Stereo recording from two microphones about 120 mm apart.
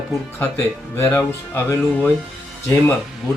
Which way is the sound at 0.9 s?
20° left (ahead or behind).